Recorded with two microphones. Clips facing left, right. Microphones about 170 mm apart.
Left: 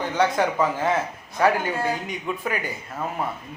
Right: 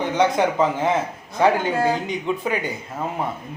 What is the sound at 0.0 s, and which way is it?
Speech, 20° right (ahead or behind).